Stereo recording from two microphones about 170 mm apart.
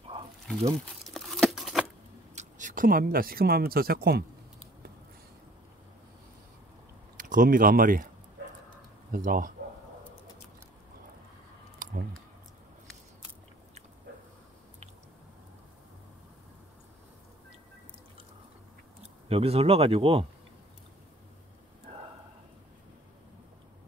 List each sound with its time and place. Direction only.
1.0 s tearing: centre (ahead or behind)
2.3 s speech: 50° right (ahead or behind)
7.2 s speech: 50° right (ahead or behind)
9.1 s speech: 55° right (ahead or behind)
11.8 s a sound: 55° right (ahead or behind)
19.2 s speech: 35° right (ahead or behind)